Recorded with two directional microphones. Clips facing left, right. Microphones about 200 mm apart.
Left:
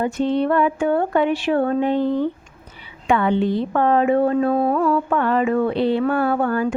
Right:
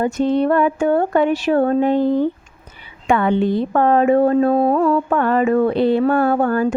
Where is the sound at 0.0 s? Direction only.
45° right (ahead or behind).